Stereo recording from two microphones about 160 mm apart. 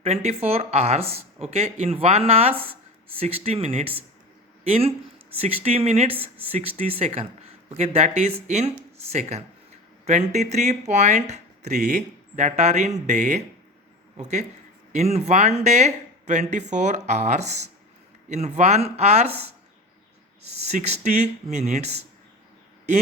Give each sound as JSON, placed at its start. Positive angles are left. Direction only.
{"t": 0.0, "sound": "speech", "side_deg": -40}
{"t": 10.1, "sound": "speech", "side_deg": -45}
{"t": 20.4, "sound": "speech", "side_deg": -40}